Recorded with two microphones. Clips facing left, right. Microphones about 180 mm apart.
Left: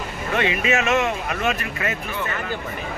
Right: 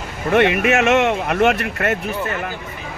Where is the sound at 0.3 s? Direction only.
60° right (ahead or behind).